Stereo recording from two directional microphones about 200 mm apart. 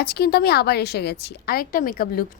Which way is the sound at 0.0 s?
50° left (ahead or behind).